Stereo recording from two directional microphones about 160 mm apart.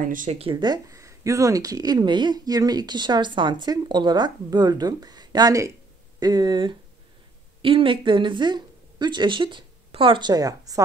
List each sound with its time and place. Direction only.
0.1 s speech: 55° right (ahead or behind)
0.4 s speech: 30° right (ahead or behind)